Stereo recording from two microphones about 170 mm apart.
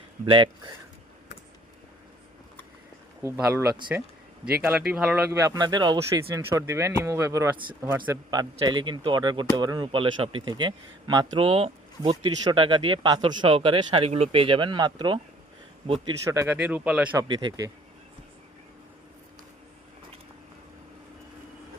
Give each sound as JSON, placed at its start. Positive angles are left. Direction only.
{"t": 0.3, "sound": "speech", "side_deg": -30}
{"t": 3.2, "sound": "speech", "side_deg": -15}
{"t": 4.6, "sound": "speech", "side_deg": -5}
{"t": 5.3, "sound": "speech", "side_deg": -20}
{"t": 8.3, "sound": "speech", "side_deg": -25}
{"t": 16.2, "sound": "speech", "side_deg": -15}
{"t": 17.2, "sound": "speech", "side_deg": -25}